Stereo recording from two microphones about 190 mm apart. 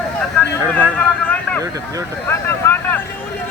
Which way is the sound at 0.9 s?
5° left (ahead or behind).